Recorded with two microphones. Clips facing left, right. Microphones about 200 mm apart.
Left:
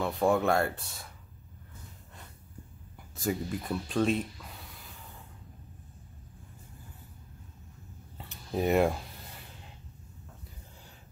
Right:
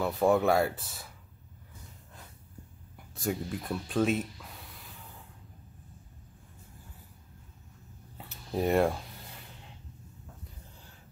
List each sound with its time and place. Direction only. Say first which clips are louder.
0.0 s speech: right 1 dB; 5° right (ahead or behind)
3.2 s speech: left 1 dB; centre (ahead or behind)
8.5 s speech: even; 5° left (ahead or behind)